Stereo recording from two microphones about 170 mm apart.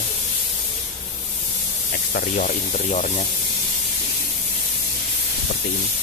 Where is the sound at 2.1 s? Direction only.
50° left (ahead or behind).